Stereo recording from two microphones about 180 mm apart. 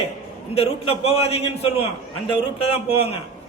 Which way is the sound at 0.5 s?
35° left (ahead or behind).